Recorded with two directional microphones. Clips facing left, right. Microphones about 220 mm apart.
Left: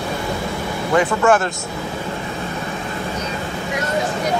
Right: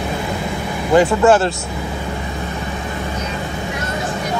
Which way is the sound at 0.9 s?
30° right (ahead or behind).